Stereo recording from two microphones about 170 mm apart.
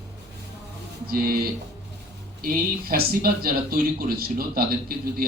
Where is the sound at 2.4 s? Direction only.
60° right (ahead or behind).